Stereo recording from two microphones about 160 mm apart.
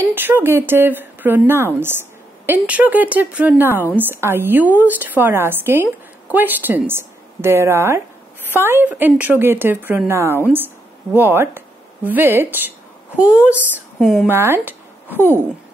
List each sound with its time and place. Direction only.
0.1 s a woman's voice: 15° right (ahead or behind)
14.2 s speech: 15° right (ahead or behind)